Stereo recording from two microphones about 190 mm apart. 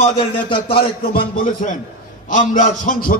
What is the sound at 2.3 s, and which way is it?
Speech, 45° left (ahead or behind).